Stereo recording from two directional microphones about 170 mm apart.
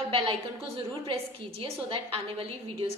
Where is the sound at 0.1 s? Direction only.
30° right (ahead or behind).